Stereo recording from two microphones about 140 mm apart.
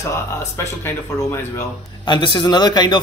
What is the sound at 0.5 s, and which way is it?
Speech, 20° left (ahead or behind).